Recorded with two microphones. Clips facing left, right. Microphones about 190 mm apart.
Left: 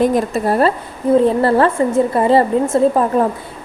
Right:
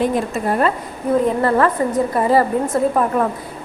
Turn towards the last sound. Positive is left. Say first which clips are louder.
# left 3 dB
turn(degrees=30)  # may be behind; listen again after turning